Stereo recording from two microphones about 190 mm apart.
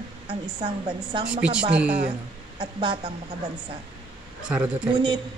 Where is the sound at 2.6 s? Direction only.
25° right (ahead or behind).